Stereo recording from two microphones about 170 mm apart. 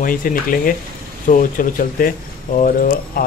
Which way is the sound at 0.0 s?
55° left (ahead or behind).